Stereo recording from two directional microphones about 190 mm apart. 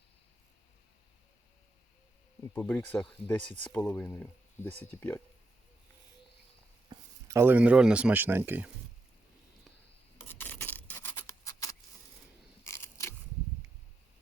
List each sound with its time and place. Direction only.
2.5 s speech: 10° left (ahead or behind)
6.9 s speech: 15° right (ahead or behind)
10.2 s rub: 10° left (ahead or behind)
12.6 s a sound: 15° left (ahead or behind)